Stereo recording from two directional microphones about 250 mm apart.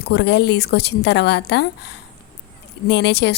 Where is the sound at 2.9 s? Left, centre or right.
Left.